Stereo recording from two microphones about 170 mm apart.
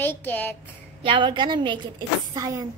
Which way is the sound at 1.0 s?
30° right (ahead or behind).